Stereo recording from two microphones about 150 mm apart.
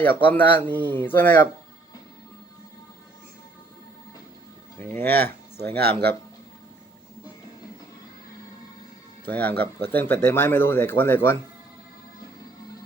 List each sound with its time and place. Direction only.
0.3 s speech: 10° left (ahead or behind)
4.8 s speech: 15° left (ahead or behind)
5.7 s speech: 90° right
9.2 s speech: 10° left (ahead or behind)